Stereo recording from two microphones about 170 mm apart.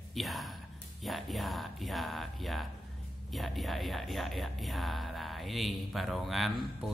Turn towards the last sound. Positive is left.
turn(degrees=0)  # may be behind; listen again after turning